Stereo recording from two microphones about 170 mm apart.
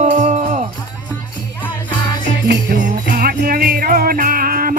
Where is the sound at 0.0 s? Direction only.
45° right (ahead or behind).